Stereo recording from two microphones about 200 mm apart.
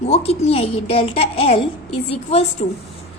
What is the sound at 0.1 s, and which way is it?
A child's voice, 30° left (ahead or behind).